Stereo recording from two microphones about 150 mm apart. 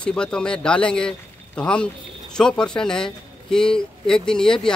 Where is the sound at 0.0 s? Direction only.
5° left (ahead or behind).